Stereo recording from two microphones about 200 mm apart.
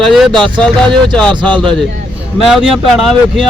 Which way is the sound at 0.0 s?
Centre (ahead or behind).